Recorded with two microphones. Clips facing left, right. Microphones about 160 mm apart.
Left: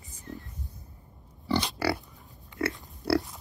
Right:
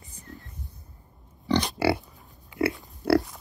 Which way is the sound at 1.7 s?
25° right (ahead or behind).